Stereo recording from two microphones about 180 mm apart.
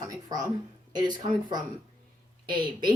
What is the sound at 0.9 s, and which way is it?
Speech, 25° right (ahead or behind).